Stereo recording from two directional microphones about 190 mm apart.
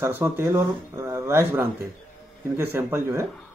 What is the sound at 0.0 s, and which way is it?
A man's voice, 15° right (ahead or behind).